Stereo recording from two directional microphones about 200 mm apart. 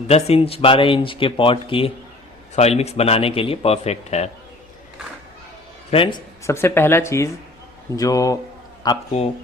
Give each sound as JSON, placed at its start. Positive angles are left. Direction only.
{"t": 0.1, "sound": "speech", "side_deg": 30}
{"t": 5.9, "sound": "speech", "side_deg": 25}